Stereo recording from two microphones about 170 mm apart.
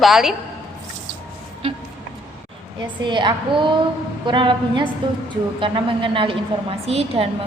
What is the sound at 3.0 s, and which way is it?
A woman's voice, 30° right (ahead or behind).